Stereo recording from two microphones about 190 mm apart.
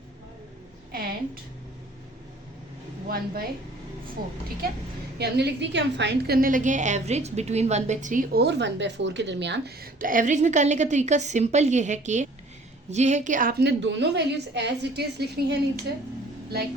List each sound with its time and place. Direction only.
3.1 s a woman's voice: 50° right (ahead or behind)